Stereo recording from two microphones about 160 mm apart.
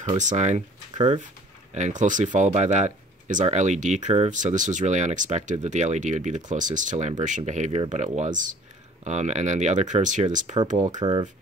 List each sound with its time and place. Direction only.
0.0 s speech: 50° right (ahead or behind)